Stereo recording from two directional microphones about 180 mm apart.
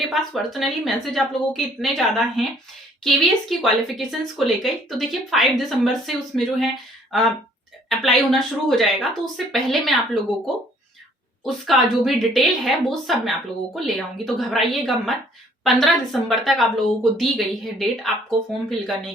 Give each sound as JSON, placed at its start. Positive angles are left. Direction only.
{"t": 0.1, "sound": "speech", "side_deg": 0}
{"t": 7.9, "sound": "speech", "side_deg": 0}
{"t": 11.4, "sound": "speech", "side_deg": 0}